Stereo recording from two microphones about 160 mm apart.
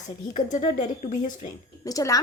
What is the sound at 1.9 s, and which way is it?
Speech, 20° left (ahead or behind).